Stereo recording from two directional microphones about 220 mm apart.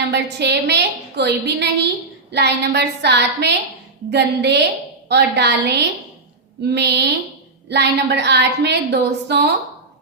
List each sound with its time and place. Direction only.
0.1 s a woman's voice: 50° right (ahead or behind)